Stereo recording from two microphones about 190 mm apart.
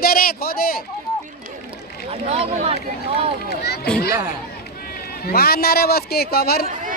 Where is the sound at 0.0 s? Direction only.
50° left (ahead or behind).